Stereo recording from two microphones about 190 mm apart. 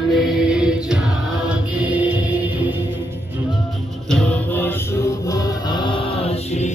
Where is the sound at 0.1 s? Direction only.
Centre (ahead or behind).